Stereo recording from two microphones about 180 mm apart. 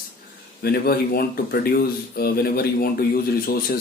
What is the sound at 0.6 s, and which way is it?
Speech, 60° left (ahead or behind).